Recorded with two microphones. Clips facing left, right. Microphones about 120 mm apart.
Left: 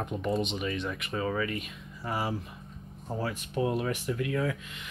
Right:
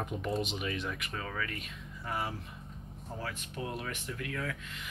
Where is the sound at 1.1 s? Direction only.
15° left (ahead or behind).